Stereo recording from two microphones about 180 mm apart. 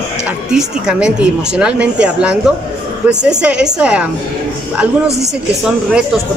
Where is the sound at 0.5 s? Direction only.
5° right (ahead or behind).